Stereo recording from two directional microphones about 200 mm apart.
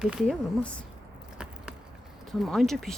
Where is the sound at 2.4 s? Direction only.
Centre (ahead or behind).